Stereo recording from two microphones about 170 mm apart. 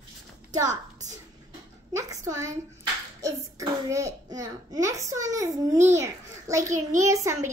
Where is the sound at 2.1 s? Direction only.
20° right (ahead or behind).